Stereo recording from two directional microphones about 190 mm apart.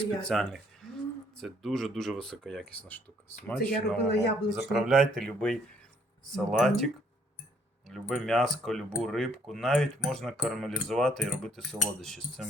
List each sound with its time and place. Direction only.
0.3 s speech: centre (ahead or behind)
4.1 s speech: 60° left (ahead or behind)
4.7 s speech: centre (ahead or behind)